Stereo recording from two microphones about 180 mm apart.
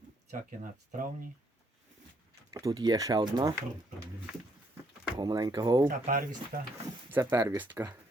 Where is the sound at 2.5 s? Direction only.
20° right (ahead or behind).